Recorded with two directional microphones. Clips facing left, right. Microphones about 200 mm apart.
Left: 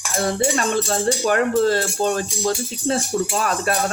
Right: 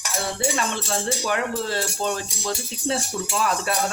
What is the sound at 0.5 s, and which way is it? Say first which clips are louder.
Speech: left 5 dB; 45° left (ahead or behind).